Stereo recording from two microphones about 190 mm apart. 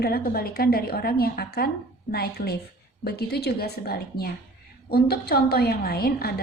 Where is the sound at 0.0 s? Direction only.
50° left (ahead or behind).